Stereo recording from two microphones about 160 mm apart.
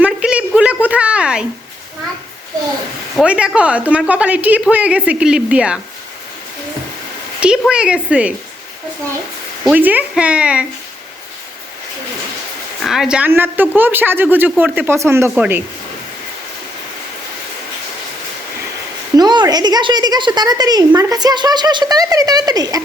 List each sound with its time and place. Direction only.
0.0 s a sound: 10° right (ahead or behind)
3.2 s speech: 5° right (ahead or behind)
7.3 s speech: 5° right (ahead or behind)
9.6 s speech: 10° right (ahead or behind)
12.8 s speech: centre (ahead or behind)
19.1 s speech: 25° right (ahead or behind)